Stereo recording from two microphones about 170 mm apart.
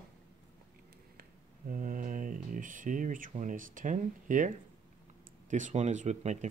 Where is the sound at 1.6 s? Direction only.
50° right (ahead or behind).